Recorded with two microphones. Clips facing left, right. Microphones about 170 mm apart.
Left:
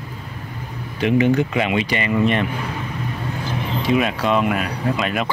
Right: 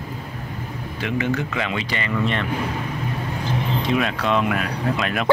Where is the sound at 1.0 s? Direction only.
20° left (ahead or behind).